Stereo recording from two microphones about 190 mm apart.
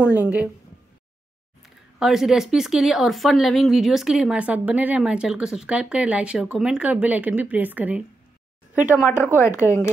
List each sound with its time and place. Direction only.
0.0 s a woman's voice: 10° right (ahead or behind)
2.0 s speech: centre (ahead or behind)
9.2 s speech: 10° left (ahead or behind)